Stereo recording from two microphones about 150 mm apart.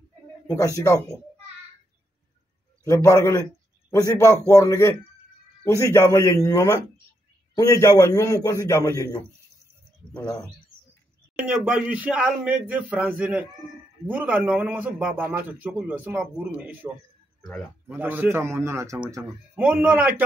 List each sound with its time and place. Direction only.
2.8 s a man's voice: 20° left (ahead or behind)
11.3 s a man's voice: 5° right (ahead or behind)
19.5 s a man's voice: 10° right (ahead or behind)